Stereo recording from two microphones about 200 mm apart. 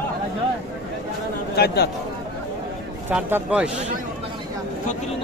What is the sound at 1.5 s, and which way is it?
Speech, 55° left (ahead or behind).